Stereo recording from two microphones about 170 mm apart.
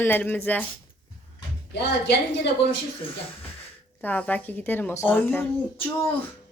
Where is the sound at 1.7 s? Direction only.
80° left.